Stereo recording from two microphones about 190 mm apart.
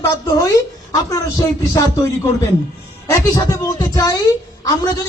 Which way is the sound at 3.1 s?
15° left (ahead or behind).